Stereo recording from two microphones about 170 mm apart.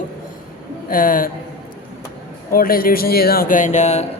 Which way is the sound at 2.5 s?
60° left (ahead or behind).